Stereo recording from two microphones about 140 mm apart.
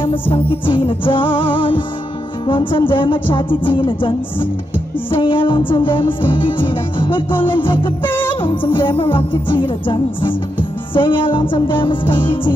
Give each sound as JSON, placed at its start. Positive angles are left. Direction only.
{"t": 0.1, "sound": "music", "side_deg": 40}
{"t": 8.0, "sound": "music", "side_deg": 15}
{"t": 8.3, "sound": "music", "side_deg": 35}